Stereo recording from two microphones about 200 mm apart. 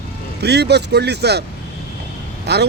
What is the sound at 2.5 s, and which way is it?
Speech, 55° right (ahead or behind).